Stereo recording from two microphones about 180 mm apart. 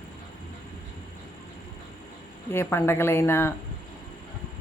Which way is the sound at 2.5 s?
15° left (ahead or behind).